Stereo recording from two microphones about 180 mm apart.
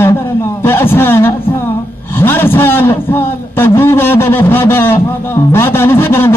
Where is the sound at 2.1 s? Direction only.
10° left (ahead or behind).